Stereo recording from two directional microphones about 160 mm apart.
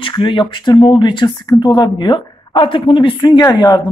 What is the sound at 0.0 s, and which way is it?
Speech, 30° left (ahead or behind).